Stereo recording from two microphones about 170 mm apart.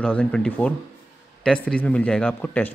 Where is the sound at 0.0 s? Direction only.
5° left (ahead or behind).